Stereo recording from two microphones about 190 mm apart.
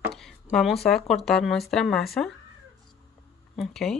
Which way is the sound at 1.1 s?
Centre (ahead or behind).